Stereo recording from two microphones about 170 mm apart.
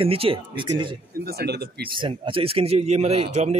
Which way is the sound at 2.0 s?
30° right (ahead or behind).